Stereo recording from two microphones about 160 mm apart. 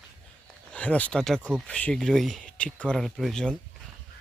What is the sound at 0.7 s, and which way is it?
Speech, 10° left (ahead or behind).